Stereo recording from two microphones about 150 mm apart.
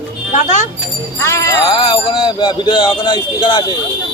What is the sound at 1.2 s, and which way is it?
Speech, 20° left (ahead or behind).